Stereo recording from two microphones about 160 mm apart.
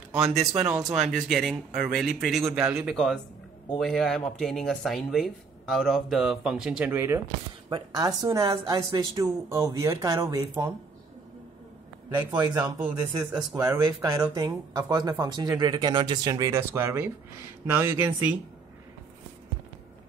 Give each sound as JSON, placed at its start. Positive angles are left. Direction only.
{"t": 0.1, "sound": "speech", "side_deg": -5}
{"t": 7.7, "sound": "speech", "side_deg": -25}
{"t": 12.3, "sound": "speech", "side_deg": -25}